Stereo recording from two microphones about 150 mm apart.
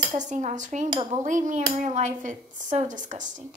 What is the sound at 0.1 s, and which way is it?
A woman's voice, 50° right (ahead or behind).